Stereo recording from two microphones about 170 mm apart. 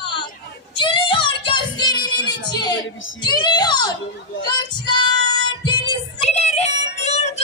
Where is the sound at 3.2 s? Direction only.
25° left (ahead or behind).